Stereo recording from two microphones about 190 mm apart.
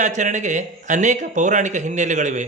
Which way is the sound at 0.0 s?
40° right (ahead or behind).